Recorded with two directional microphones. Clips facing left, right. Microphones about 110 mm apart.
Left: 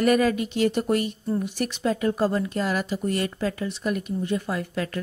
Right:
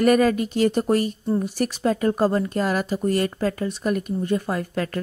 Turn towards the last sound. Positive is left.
turn(degrees=-45)  # may be behind; listen again after turning